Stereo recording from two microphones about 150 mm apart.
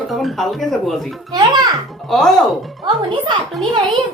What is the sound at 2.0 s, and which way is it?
Speech, centre (ahead or behind).